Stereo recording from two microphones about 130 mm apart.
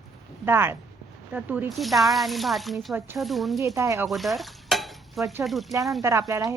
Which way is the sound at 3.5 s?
25° right (ahead or behind).